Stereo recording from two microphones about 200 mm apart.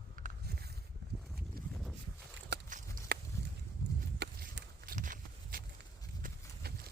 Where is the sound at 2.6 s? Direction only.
40° right (ahead or behind).